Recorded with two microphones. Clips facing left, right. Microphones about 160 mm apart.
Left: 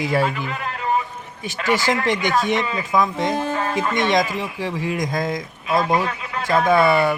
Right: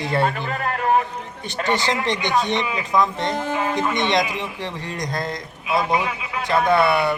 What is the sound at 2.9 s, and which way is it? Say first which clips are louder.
Speech: left 1 dB; 5° left (ahead or behind).